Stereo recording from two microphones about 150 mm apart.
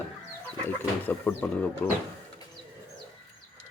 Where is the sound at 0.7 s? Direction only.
10° left (ahead or behind).